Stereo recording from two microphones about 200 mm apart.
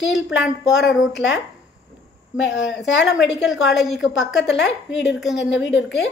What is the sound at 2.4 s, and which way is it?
Speech, 65° left (ahead or behind).